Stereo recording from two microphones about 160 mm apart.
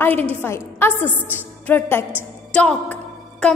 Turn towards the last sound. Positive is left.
turn(degrees=5)  # may be behind; listen again after turning